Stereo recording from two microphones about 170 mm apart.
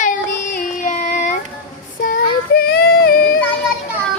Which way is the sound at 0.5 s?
50° left (ahead or behind).